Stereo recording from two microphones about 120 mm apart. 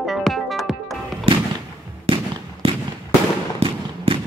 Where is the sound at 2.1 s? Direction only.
55° right (ahead or behind).